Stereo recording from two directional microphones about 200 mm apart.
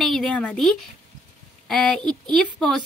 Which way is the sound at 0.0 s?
Centre (ahead or behind).